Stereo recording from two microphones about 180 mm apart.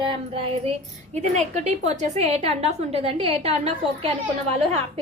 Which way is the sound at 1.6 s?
40° right (ahead or behind).